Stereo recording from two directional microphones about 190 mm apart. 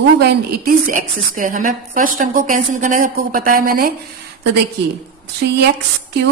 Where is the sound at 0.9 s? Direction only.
45° right (ahead or behind).